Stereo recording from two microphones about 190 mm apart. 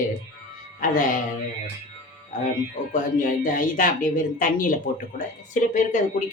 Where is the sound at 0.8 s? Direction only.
45° left (ahead or behind).